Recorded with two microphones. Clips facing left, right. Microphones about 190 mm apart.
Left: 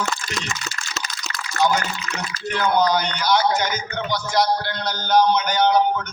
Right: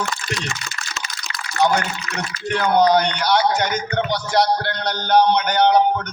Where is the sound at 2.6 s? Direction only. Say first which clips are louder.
Right 4 dB; 65° right (ahead or behind).